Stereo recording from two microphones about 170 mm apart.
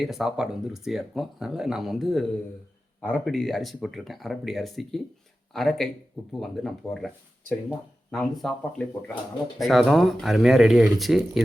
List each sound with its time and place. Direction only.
0.0 s speech: centre (ahead or behind)